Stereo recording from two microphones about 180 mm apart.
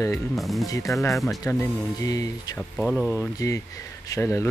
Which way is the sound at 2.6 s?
10° left (ahead or behind).